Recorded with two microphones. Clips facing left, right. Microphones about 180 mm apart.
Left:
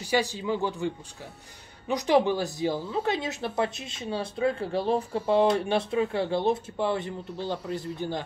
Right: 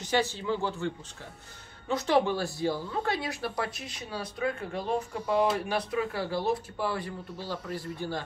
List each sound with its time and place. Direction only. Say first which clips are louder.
0.0 s a man's voice: left 2 dB; 15° left (ahead or behind)